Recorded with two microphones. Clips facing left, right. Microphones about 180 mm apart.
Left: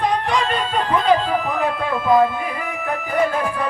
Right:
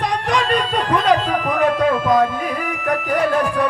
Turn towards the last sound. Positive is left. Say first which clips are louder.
# right 2 dB
turn(degrees=-90)